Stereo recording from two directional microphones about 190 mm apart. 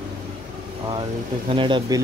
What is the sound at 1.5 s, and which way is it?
Speech, 25° right (ahead or behind).